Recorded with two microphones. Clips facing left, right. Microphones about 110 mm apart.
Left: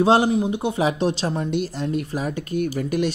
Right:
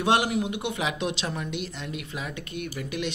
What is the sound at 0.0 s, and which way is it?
Speech, 30° left (ahead or behind).